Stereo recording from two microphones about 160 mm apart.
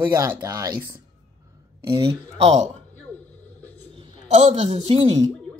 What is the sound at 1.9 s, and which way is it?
Speech, 35° right (ahead or behind).